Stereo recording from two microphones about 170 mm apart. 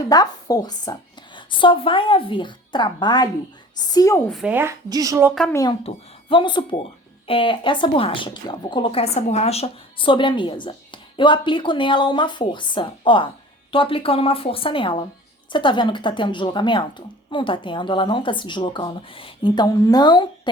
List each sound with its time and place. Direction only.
0.1 s a woman's voice: 20° left (ahead or behind)
4.3 s speech: centre (ahead or behind)
4.5 s speech: 20° right (ahead or behind)
5.5 s a woman's voice: 20° left (ahead or behind)
5.8 s a woman's voice: 30° left (ahead or behind)